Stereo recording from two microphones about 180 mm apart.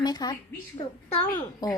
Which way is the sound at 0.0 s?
20° left (ahead or behind).